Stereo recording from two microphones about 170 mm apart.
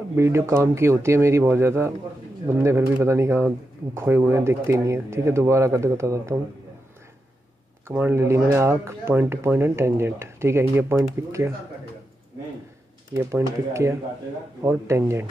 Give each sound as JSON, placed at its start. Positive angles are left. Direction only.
{"t": 0.1, "sound": "speech", "side_deg": -15}
{"t": 7.9, "sound": "speech", "side_deg": -15}
{"t": 13.1, "sound": "speech", "side_deg": -15}